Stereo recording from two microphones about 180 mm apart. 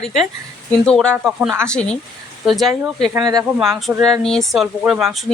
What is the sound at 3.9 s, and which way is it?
Speech, 10° right (ahead or behind).